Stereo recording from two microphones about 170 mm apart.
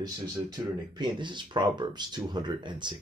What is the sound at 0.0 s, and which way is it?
Speech, 25° right (ahead or behind).